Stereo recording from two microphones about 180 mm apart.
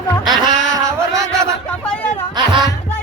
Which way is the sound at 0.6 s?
90° left.